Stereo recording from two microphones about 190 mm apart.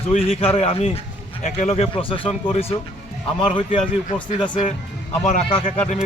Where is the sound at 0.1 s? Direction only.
30° left (ahead or behind).